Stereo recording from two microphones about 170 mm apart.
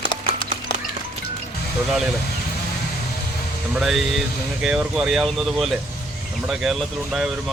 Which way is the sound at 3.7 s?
Centre (ahead or behind).